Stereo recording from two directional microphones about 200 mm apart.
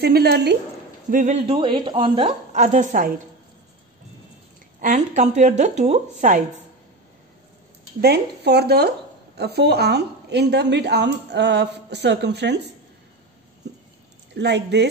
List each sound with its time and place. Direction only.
0.0 s a woman's voice: 55° right (ahead or behind)
1.1 s a woman's voice: 35° right (ahead or behind)
4.7 s a woman's voice: 40° right (ahead or behind)
8.0 s a woman's voice: 55° right (ahead or behind)
14.3 s a woman's voice: 60° right (ahead or behind)